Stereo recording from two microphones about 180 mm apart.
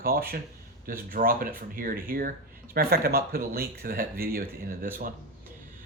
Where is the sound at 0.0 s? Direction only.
55° right (ahead or behind).